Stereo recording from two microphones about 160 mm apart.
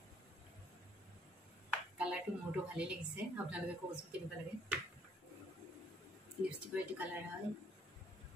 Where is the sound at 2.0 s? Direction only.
5° right (ahead or behind).